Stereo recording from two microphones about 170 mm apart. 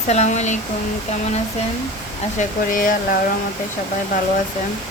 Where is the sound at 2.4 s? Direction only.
50° left (ahead or behind).